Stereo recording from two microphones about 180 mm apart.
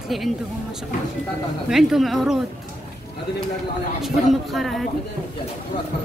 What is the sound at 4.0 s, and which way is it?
Speech, centre (ahead or behind).